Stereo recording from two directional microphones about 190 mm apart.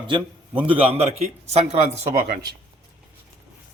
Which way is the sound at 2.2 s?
50° right (ahead or behind).